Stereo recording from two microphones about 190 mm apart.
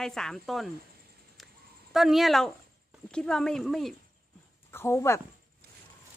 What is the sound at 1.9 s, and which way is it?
Speech, centre (ahead or behind).